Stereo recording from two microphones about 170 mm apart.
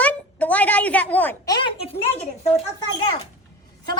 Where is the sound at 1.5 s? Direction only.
30° left (ahead or behind).